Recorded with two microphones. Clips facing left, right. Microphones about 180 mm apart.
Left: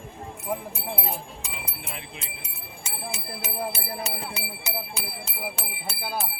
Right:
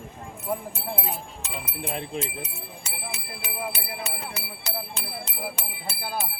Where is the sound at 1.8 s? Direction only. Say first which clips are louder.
Right 9 dB; 40° right (ahead or behind).